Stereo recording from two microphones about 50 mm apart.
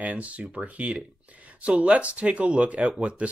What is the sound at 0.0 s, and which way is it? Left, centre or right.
Speech, right.